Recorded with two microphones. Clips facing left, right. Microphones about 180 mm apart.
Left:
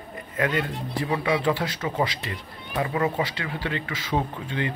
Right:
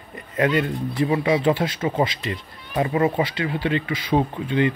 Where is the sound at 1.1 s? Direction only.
20° right (ahead or behind).